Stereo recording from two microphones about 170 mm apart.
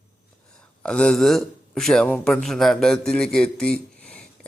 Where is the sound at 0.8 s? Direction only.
5° left (ahead or behind).